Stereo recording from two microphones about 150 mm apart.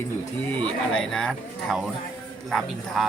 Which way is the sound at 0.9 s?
5° left (ahead or behind).